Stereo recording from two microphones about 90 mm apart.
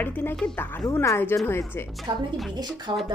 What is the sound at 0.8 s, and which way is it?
Speech, 35° left (ahead or behind).